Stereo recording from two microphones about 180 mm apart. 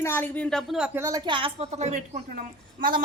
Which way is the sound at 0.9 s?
20° right (ahead or behind).